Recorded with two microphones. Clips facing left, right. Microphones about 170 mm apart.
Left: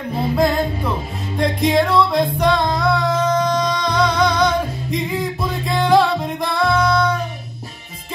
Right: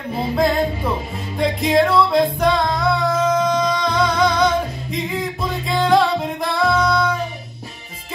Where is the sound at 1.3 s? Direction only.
Centre (ahead or behind).